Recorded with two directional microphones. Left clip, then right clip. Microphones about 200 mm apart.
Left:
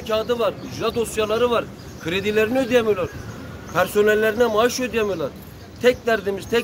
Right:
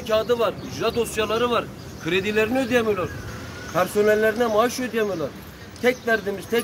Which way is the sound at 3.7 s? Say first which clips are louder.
Left 2 dB; 25° left (ahead or behind).